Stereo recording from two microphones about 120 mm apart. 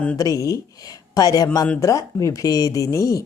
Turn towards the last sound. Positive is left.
turn(degrees=25)  # may be behind; listen again after turning